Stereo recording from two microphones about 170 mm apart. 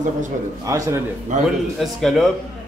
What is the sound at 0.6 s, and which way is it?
Speech, 20° right (ahead or behind).